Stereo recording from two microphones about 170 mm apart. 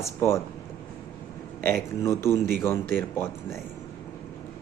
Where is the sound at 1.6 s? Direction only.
15° left (ahead or behind).